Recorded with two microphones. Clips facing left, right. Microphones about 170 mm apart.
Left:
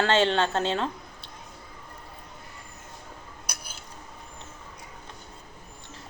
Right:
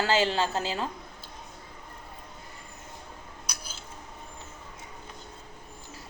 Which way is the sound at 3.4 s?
55° left (ahead or behind).